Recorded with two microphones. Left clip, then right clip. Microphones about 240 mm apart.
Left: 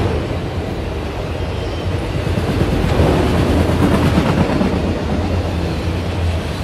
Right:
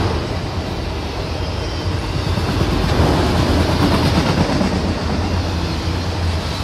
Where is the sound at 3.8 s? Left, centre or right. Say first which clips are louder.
Left 1 dB; right.